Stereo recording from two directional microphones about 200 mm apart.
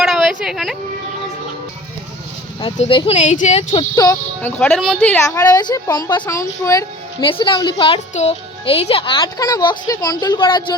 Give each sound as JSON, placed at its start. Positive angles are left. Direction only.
{"t": 0.0, "sound": "a sound", "side_deg": 0}
{"t": 2.7, "sound": "speech", "side_deg": 30}
{"t": 3.9, "sound": "a child's voice", "side_deg": 20}
{"t": 4.5, "sound": "speech", "side_deg": 5}
{"t": 5.1, "sound": "a woman's voice", "side_deg": 15}